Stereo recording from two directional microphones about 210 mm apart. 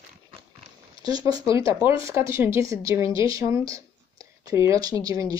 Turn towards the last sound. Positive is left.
turn(degrees=-15)  # may be behind; listen again after turning